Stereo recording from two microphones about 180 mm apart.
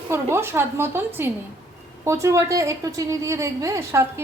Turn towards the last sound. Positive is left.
turn(degrees=-15)  # may be behind; listen again after turning